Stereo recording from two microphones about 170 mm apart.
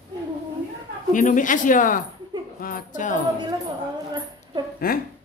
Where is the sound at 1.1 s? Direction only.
50° left (ahead or behind).